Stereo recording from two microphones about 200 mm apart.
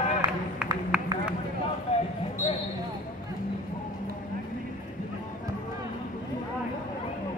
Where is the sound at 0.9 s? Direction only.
5° right (ahead or behind).